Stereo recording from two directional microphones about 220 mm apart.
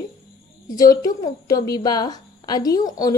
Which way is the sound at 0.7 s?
15° left (ahead or behind).